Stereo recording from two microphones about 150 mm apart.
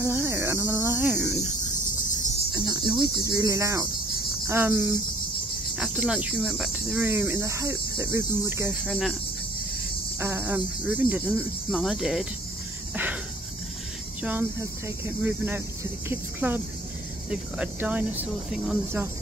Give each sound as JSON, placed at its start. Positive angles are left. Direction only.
{"t": 0.0, "sound": "cricket", "side_deg": -15}
{"t": 1.2, "sound": "cricket", "side_deg": 0}
{"t": 2.5, "sound": "cricket", "side_deg": -25}
{"t": 3.0, "sound": "speech", "side_deg": -25}
{"t": 8.8, "sound": "speech", "side_deg": 0}
{"t": 10.2, "sound": "speech", "side_deg": -15}
{"t": 12.9, "sound": "a sound", "side_deg": -10}
{"t": 14.2, "sound": "speech", "side_deg": -15}